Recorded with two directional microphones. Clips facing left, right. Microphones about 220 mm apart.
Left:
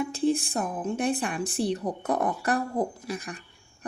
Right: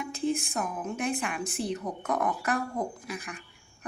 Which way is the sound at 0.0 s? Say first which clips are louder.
Left 5 dB; 35° left (ahead or behind).